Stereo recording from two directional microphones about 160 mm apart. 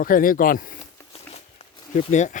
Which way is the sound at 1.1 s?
40° left (ahead or behind).